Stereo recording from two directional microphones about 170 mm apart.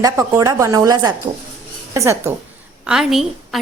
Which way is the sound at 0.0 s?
20° right (ahead or behind).